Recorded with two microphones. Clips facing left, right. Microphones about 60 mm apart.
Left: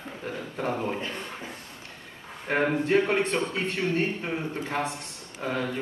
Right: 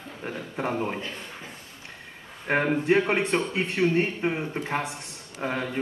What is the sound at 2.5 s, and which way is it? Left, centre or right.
A man's voice, right.